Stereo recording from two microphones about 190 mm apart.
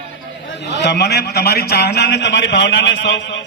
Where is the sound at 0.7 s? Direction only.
60° left (ahead or behind).